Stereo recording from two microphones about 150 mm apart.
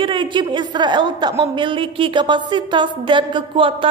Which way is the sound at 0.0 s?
30° right (ahead or behind).